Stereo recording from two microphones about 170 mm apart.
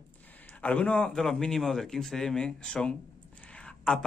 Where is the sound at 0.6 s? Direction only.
5° left (ahead or behind).